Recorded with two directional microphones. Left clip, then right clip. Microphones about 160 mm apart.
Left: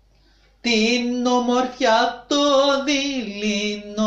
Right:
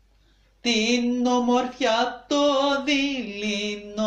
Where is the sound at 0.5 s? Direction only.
25° right (ahead or behind).